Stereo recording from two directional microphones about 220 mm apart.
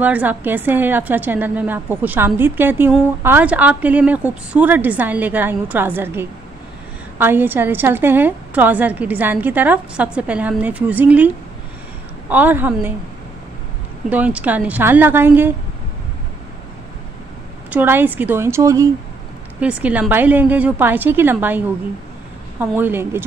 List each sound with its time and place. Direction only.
0.0 s a woman's voice: 5° right (ahead or behind)
14.0 s a woman's voice: 5° right (ahead or behind)
17.6 s a woman's voice: 10° right (ahead or behind)